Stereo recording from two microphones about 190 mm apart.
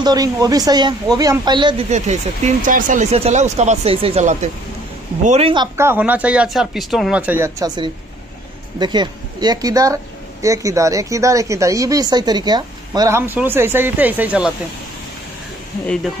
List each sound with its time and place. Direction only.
0.0 s speech: 20° right (ahead or behind)
1.9 s speech: 35° right (ahead or behind)
5.8 s speech: 10° right (ahead or behind)